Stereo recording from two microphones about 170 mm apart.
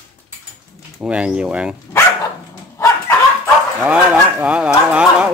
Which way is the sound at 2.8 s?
15° left (ahead or behind).